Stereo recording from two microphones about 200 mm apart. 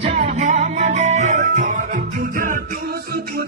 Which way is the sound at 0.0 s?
35° right (ahead or behind).